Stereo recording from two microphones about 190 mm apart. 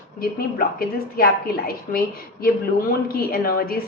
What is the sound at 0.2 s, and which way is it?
A woman's voice, 50° left (ahead or behind).